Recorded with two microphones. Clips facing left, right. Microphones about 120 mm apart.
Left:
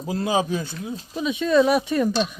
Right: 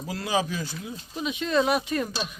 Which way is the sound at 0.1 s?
25° left (ahead or behind).